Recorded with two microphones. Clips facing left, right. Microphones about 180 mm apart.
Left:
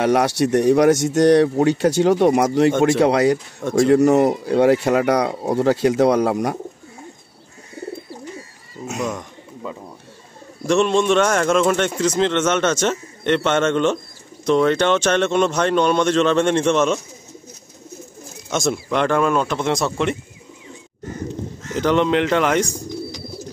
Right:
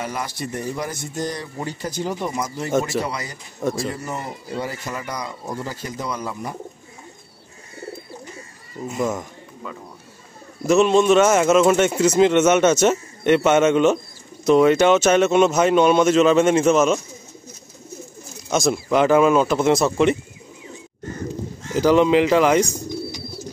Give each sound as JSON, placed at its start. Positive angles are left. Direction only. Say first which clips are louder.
{"t": 0.0, "sound": "speech", "louder": "left 11 dB", "side_deg": 75}
{"t": 10.7, "sound": "speech", "louder": "right 2 dB", "side_deg": -5}
{"t": 18.5, "sound": "speech", "louder": "right 2 dB", "side_deg": 0}
{"t": 21.7, "sound": "speech", "louder": "right 2 dB", "side_deg": -5}